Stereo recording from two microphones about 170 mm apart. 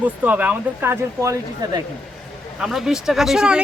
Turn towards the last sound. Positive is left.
turn(degrees=-5)  # may be behind; listen again after turning